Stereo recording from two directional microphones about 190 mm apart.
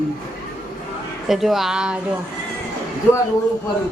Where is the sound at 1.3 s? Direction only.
Centre (ahead or behind).